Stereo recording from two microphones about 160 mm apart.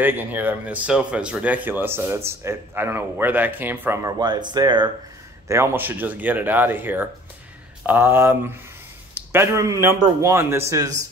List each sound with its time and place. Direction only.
0.0 s speech: 10° right (ahead or behind)
4.2 s speech: 25° right (ahead or behind)
5.5 s speech: 15° right (ahead or behind)